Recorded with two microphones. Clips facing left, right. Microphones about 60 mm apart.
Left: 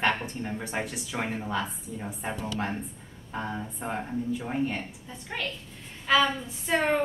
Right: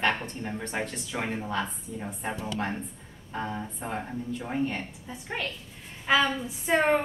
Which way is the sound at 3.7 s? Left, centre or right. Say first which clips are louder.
Left 2 dB; centre.